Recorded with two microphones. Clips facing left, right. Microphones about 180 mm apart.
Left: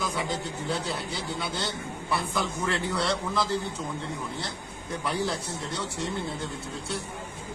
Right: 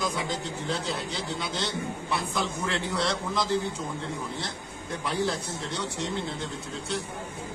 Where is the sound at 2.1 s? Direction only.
Centre (ahead or behind).